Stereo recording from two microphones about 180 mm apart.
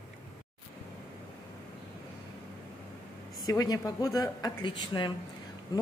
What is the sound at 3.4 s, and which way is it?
Speech, 20° left (ahead or behind).